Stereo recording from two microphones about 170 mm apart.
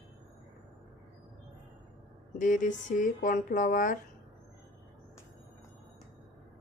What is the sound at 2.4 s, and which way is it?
Speech, 50° left (ahead or behind).